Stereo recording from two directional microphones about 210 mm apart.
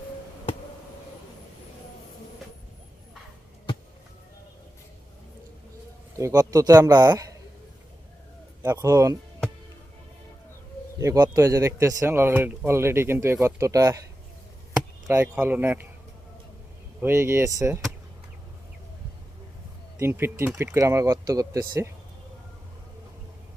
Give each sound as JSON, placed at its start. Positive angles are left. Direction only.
{"t": 6.1, "sound": "speech", "side_deg": -15}
{"t": 8.6, "sound": "speech", "side_deg": -15}
{"t": 10.9, "sound": "speech", "side_deg": -15}
{"t": 15.0, "sound": "speech", "side_deg": -10}
{"t": 17.0, "sound": "speech", "side_deg": -10}
{"t": 20.0, "sound": "speech", "side_deg": -10}